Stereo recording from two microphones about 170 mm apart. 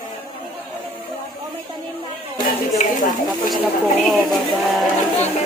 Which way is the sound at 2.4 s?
50° left (ahead or behind).